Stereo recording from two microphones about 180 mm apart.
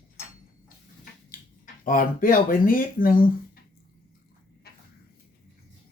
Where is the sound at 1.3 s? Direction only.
50° left (ahead or behind).